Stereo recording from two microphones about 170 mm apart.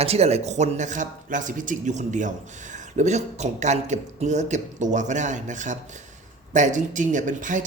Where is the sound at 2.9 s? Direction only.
45° right (ahead or behind).